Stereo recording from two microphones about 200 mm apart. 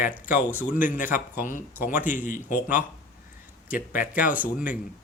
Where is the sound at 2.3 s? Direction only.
40° left (ahead or behind).